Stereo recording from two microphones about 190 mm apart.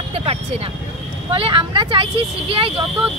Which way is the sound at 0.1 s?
30° right (ahead or behind).